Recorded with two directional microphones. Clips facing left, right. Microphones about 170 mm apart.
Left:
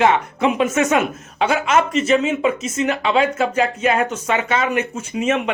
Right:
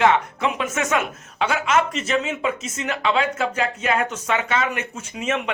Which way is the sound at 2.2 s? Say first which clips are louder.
Left 6 dB; 15° left (ahead or behind).